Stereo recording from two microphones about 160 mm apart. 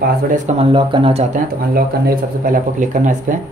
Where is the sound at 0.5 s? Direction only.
35° right (ahead or behind).